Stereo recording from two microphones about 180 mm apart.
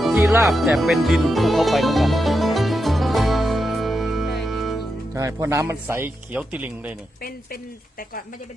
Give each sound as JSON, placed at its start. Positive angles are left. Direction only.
{"t": 0.0, "sound": "music", "side_deg": 0}
{"t": 5.1, "sound": "speech", "side_deg": -15}
{"t": 7.2, "sound": "speech", "side_deg": 55}